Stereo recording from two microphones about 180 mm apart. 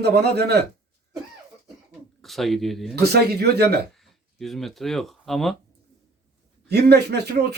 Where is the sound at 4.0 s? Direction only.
Centre (ahead or behind).